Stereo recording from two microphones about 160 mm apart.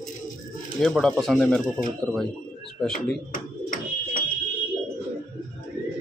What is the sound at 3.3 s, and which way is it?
Bird, 55° left (ahead or behind).